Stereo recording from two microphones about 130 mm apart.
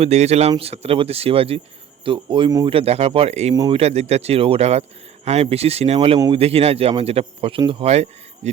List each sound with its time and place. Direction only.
0.0 s a man's voice: 55° right (ahead or behind); by 2.6 s 35° right (ahead or behind)
2.6 s speech: 50° right (ahead or behind)
7.9 s a man's voice: 60° right (ahead or behind)